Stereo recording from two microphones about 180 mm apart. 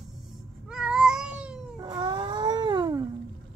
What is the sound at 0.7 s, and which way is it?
Cat, 5° right (ahead or behind).